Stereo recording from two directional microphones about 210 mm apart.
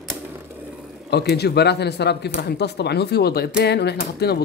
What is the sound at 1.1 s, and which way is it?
Speech, 50° left (ahead or behind).